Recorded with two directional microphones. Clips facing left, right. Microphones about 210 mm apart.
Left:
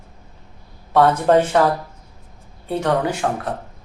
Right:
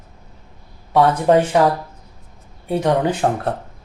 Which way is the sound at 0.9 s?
10° right (ahead or behind).